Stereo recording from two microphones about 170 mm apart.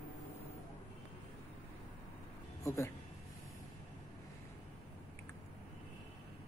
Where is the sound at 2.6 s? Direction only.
15° left (ahead or behind).